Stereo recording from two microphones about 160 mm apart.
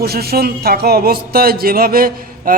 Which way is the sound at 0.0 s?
75° right (ahead or behind).